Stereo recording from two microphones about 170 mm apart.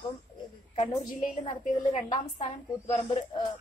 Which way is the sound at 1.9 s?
25° left (ahead or behind).